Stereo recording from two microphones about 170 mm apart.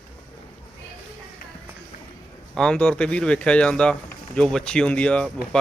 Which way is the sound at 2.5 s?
5° left (ahead or behind).